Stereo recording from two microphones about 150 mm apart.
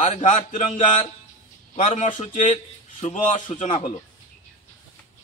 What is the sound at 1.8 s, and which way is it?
A man's voice, 55° left (ahead or behind).